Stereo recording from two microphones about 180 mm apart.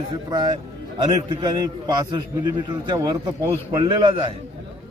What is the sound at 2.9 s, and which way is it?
A man's voice, 25° right (ahead or behind).